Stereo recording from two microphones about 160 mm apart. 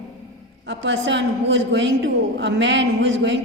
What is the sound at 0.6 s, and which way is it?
A woman's voice, 90° right.